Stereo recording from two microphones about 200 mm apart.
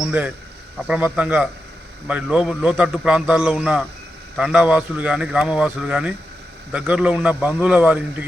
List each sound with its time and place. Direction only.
0.0 s a man's voice: 5° right (ahead or behind)